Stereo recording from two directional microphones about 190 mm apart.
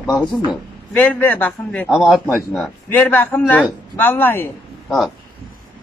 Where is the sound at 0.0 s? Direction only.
Centre (ahead or behind).